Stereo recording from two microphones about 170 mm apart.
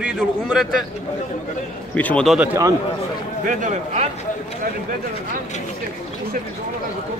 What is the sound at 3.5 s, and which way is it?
Speech, 45° right (ahead or behind).